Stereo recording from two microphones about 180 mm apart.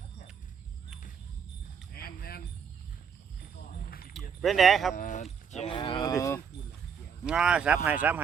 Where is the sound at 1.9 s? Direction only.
55° left (ahead or behind).